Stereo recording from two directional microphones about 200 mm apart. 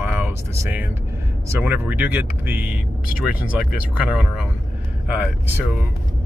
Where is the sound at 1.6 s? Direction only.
10° right (ahead or behind).